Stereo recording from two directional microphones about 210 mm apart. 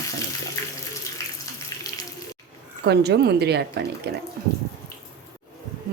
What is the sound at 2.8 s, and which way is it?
Speech, 50° right (ahead or behind).